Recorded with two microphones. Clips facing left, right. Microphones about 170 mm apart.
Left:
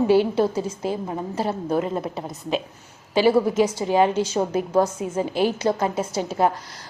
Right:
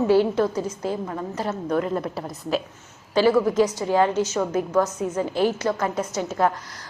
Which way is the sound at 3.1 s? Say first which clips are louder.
Even; 25° left (ahead or behind).